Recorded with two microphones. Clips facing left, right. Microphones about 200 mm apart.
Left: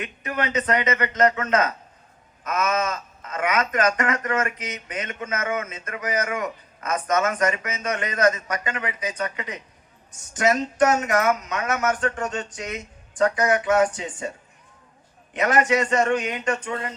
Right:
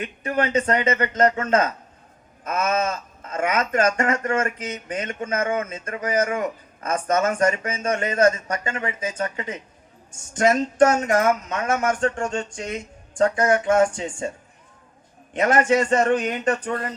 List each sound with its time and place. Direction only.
0.0 s speech: 30° right (ahead or behind)
15.4 s a man's voice: 30° right (ahead or behind)